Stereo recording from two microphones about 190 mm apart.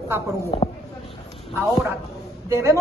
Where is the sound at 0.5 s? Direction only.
25° left (ahead or behind).